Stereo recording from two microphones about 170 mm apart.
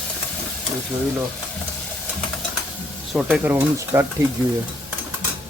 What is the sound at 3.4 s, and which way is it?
Speech, 10° right (ahead or behind).